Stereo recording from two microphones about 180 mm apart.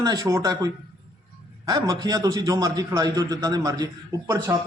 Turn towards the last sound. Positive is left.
turn(degrees=-20)  # may be behind; listen again after turning